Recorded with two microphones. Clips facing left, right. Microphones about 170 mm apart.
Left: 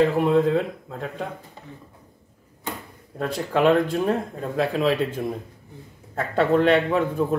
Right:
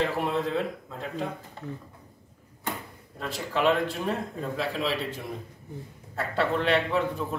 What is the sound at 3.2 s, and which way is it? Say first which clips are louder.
Speech: left 6 dB; 50° left (ahead or behind).